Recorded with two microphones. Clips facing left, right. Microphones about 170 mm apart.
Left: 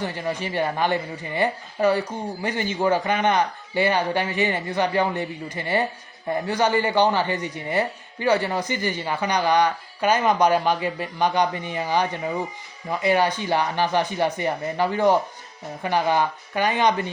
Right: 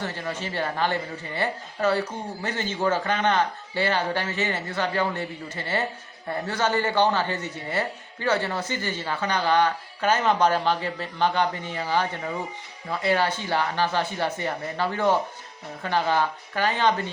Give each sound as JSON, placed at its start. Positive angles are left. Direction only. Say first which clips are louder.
{"t": 0.0, "sound": "speech", "louder": "left 4 dB", "side_deg": 15}